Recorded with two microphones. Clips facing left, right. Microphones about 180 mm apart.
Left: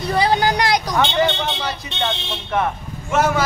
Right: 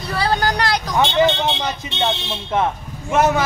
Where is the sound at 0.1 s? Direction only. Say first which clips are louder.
Left 2 dB; 15° left (ahead or behind).